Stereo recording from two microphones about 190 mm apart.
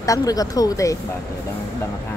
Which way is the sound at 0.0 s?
20° left (ahead or behind).